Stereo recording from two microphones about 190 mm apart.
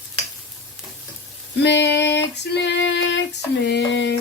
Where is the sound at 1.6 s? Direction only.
65° left (ahead or behind).